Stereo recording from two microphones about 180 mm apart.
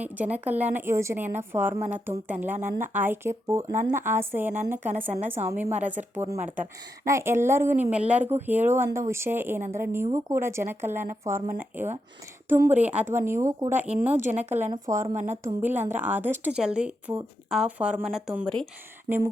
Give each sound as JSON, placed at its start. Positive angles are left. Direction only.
{"t": 0.0, "sound": "a woman's voice", "side_deg": -10}
{"t": 15.0, "sound": "speech", "side_deg": -40}
{"t": 15.3, "sound": "a woman's voice", "side_deg": -10}
{"t": 19.0, "sound": "speech", "side_deg": -10}